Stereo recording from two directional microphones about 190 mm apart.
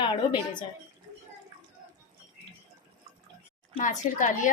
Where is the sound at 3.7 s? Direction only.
40° left (ahead or behind).